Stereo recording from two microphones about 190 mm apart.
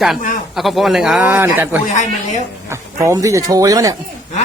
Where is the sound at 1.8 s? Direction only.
40° left (ahead or behind).